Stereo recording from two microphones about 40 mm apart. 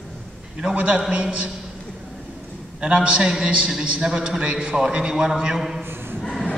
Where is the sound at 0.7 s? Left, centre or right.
Right.